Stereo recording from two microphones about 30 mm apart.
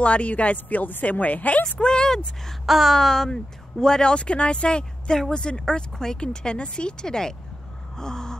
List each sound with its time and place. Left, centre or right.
0.0 s speech: left
0.7 s speech: left
1.6 s speech: left
2.6 s a sound: centre
2.9 s speech: centre
4.1 s speech: left
8.0 s gasp: left